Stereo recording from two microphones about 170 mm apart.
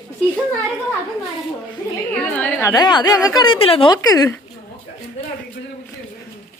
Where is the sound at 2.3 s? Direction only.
10° left (ahead or behind).